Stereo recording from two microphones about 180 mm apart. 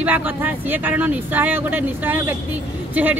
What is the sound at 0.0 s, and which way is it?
Speech, 10° right (ahead or behind).